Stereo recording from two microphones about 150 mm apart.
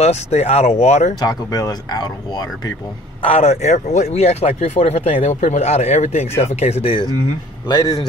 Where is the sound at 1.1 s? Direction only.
25° left (ahead or behind).